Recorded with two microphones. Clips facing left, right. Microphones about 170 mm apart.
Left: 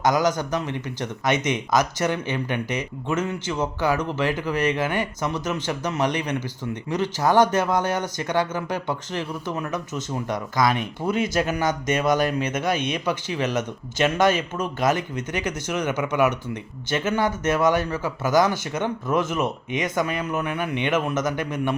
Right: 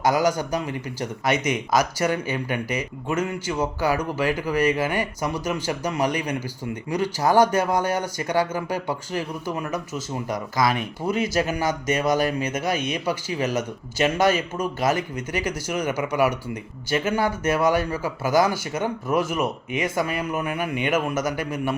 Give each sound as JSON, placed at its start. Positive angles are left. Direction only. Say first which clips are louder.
{"t": 0.0, "sound": "speech", "louder": "even", "side_deg": -10}